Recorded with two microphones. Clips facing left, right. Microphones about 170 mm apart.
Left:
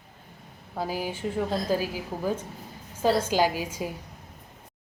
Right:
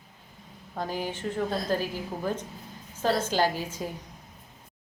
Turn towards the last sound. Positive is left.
turn(degrees=10)  # may be behind; listen again after turning